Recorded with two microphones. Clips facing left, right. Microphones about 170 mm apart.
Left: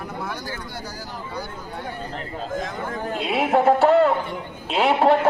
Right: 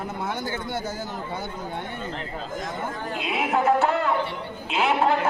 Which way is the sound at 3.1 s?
30° left (ahead or behind).